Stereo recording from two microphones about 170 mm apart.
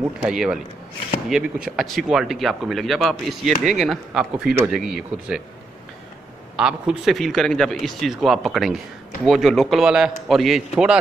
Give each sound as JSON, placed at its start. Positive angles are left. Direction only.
{"t": 0.2, "sound": "speech", "side_deg": -5}
{"t": 6.5, "sound": "speech", "side_deg": -5}